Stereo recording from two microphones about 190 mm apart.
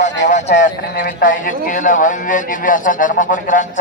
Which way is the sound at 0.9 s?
45° left (ahead or behind).